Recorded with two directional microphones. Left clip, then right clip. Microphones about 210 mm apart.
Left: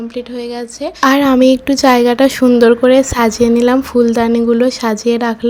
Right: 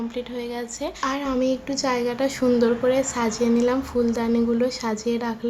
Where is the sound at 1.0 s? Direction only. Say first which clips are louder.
Left 15 dB; 45° left (ahead or behind).